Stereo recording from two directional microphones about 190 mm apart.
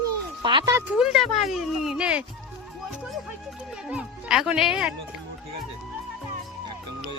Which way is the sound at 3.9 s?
5° right (ahead or behind).